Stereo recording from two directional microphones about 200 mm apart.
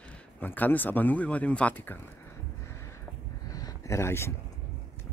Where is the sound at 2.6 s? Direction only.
15° left (ahead or behind).